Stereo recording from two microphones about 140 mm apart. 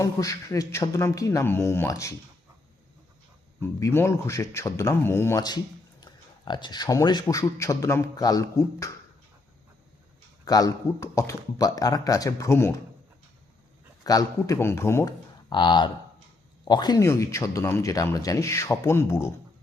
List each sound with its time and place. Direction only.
0.0 s speech: 20° left (ahead or behind)
3.6 s speech: 20° left (ahead or behind)
5.4 s speech: 30° left (ahead or behind)
10.4 s speech: 25° left (ahead or behind)
14.0 s speech: 25° left (ahead or behind)
15.4 s speech: 35° left (ahead or behind)
17.0 s speech: 20° left (ahead or behind)